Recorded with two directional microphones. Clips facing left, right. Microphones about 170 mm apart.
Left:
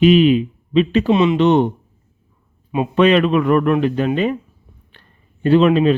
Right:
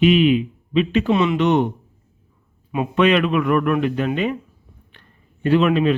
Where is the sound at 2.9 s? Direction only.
35° left (ahead or behind).